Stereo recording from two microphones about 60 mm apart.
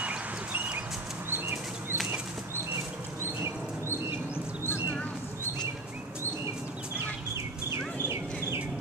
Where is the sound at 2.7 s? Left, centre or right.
Right.